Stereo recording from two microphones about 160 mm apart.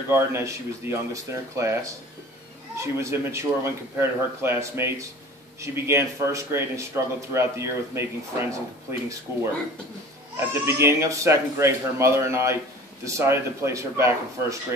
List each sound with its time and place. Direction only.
0.1 s speech: 15° right (ahead or behind)
10.6 s speech: 15° right (ahead or behind)